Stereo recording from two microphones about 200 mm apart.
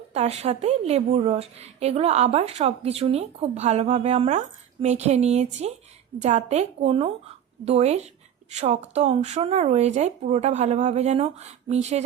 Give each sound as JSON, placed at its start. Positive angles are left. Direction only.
{"t": 0.1, "sound": "a woman's voice", "side_deg": -30}